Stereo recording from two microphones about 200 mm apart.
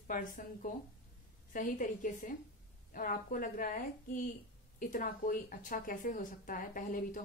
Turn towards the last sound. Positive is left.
turn(degrees=40)  # may be behind; listen again after turning